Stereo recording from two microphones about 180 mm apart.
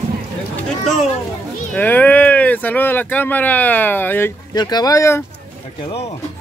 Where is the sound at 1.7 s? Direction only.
10° left (ahead or behind).